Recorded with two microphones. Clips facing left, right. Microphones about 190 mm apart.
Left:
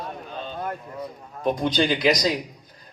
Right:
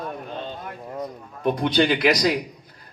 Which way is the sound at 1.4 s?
60° right (ahead or behind).